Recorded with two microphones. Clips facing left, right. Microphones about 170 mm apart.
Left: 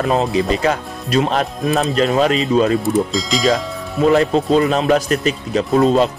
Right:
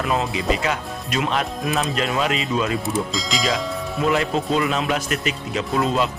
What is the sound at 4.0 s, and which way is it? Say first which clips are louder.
Speech: left 8 dB; 35° left (ahead or behind).